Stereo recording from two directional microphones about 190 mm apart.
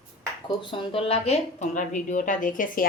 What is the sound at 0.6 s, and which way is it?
Speech, 25° left (ahead or behind).